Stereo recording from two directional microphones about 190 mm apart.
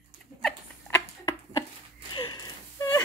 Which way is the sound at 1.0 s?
15° left (ahead or behind).